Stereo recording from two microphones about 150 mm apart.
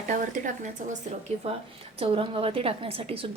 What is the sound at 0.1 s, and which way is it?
Speech, 60° right (ahead or behind).